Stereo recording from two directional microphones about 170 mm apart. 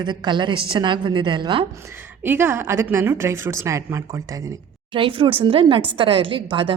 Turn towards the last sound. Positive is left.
turn(degrees=-30)  # may be behind; listen again after turning